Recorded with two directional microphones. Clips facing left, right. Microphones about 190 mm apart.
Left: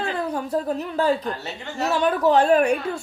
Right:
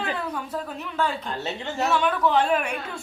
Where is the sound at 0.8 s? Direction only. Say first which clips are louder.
Left 6 dB; 40° left (ahead or behind).